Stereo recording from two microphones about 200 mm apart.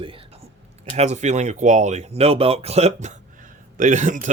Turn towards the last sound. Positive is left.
turn(degrees=-40)  # may be behind; listen again after turning